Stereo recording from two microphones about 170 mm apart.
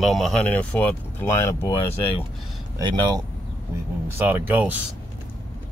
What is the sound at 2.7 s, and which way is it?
Speech, 20° right (ahead or behind).